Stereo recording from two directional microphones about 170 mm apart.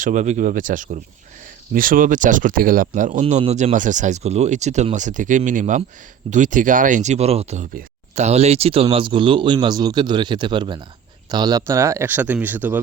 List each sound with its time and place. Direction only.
0.0 s speech: 45° right (ahead or behind); by 12.8 s 10° right (ahead or behind)